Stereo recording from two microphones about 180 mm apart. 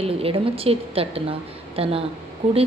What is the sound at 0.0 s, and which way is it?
A woman's voice, 30° right (ahead or behind).